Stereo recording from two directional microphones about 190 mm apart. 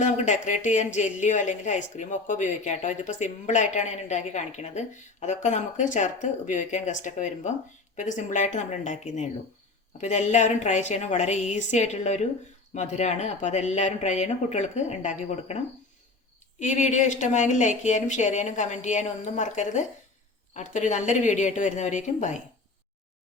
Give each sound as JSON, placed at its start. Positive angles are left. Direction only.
{"t": 0.0, "sound": "speech", "side_deg": 40}